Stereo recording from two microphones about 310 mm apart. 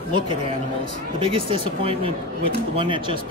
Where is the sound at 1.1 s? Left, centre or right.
Centre.